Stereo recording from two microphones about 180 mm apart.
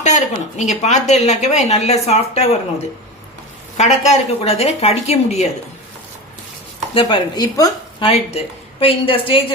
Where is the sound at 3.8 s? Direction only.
40° left (ahead or behind).